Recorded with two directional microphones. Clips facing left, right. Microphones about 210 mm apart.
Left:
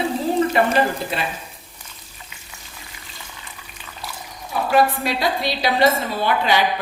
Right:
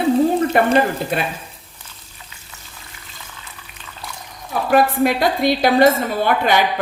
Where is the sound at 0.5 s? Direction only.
55° right (ahead or behind).